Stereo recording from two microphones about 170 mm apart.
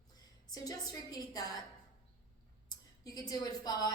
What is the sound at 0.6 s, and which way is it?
A woman's voice, 20° left (ahead or behind).